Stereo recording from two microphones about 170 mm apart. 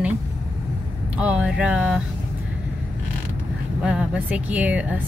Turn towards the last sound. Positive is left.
turn(degrees=-10)  # may be behind; listen again after turning